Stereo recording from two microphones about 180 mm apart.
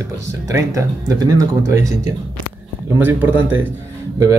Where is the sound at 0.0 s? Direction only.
15° right (ahead or behind).